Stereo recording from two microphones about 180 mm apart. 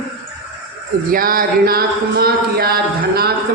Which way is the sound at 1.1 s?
50° right (ahead or behind).